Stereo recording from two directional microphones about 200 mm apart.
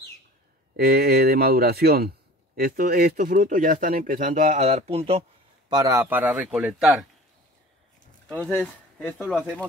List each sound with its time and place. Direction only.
0.7 s speech: 50° right (ahead or behind); by 5.2 s 30° right (ahead or behind)
5.7 s a man's voice: 15° right (ahead or behind)
8.3 s speech: 5° left (ahead or behind)